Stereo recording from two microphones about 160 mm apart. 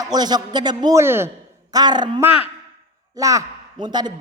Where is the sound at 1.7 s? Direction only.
25° right (ahead or behind).